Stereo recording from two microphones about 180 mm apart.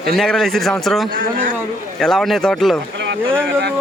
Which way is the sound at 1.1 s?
50° right (ahead or behind).